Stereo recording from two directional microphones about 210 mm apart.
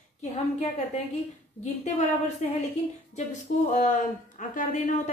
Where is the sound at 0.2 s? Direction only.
35° left (ahead or behind).